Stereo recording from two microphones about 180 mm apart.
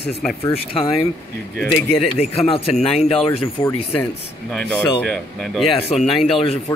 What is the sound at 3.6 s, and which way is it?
Speech, 25° left (ahead or behind).